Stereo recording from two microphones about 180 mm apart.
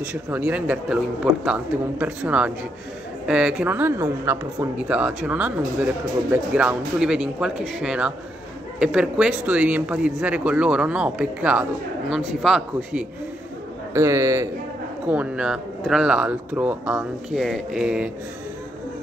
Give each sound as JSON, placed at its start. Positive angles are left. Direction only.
{"t": 0.0, "sound": "speech", "side_deg": -10}
{"t": 13.9, "sound": "speech", "side_deg": -15}
{"t": 15.0, "sound": "speech", "side_deg": -5}